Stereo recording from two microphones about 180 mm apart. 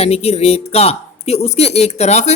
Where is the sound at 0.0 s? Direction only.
35° left (ahead or behind).